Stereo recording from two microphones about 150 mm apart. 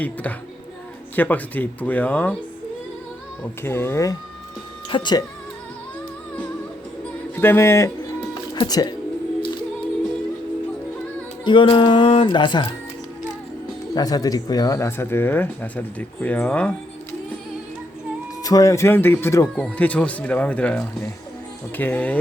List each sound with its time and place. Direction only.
0.0 s speech: 10° left (ahead or behind)
3.6 s speech: 15° left (ahead or behind)
4.9 s a sound: 30° left (ahead or behind)
7.3 s speech: 15° left (ahead or behind)
11.4 s a sound: 35° left (ahead or behind)
13.9 s speech: 25° left (ahead or behind); by 17.2 s 10° left (ahead or behind)
18.4 s speech: 25° left (ahead or behind)